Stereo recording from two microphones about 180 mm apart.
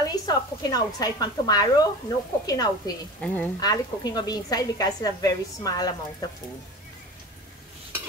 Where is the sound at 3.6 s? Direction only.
20° left (ahead or behind).